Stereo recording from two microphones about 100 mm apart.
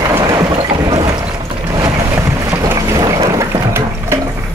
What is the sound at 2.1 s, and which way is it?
Boat, 20° right (ahead or behind).